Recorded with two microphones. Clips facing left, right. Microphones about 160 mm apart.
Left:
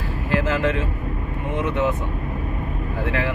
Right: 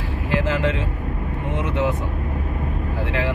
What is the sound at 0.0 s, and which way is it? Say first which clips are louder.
Vehicle: even; 20° right (ahead or behind).